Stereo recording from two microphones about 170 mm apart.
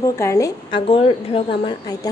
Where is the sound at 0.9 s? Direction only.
35° left (ahead or behind).